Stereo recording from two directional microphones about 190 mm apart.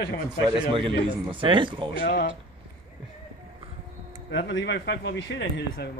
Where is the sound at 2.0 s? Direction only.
60° left (ahead or behind).